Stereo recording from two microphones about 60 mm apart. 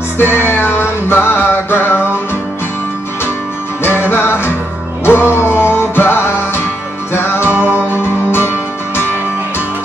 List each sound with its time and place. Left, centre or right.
0.2 s music: left
3.8 s music: left
7.4 s music: right
8.0 s music: left